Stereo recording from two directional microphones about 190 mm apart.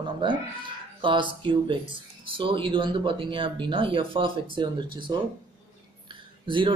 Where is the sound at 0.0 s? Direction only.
25° right (ahead or behind).